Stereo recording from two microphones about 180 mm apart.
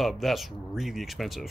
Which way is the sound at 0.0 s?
Centre (ahead or behind).